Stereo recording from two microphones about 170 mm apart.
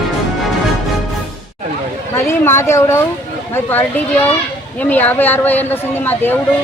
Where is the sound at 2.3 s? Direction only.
15° left (ahead or behind).